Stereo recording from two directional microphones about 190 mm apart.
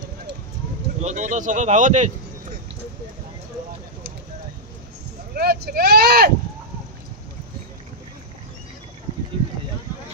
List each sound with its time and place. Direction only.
1.0 s speech: 40° right (ahead or behind)
5.3 s speech: 55° right (ahead or behind)